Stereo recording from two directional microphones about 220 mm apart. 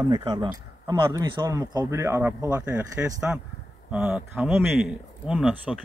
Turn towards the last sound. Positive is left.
turn(degrees=-5)  # may be behind; listen again after turning